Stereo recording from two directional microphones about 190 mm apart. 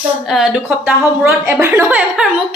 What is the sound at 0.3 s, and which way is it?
A woman's voice, 5° right (ahead or behind).